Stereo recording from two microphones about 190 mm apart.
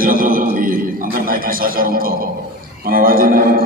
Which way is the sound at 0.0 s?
45° right (ahead or behind).